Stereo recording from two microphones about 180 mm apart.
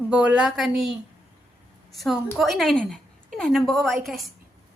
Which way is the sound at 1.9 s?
Centre (ahead or behind).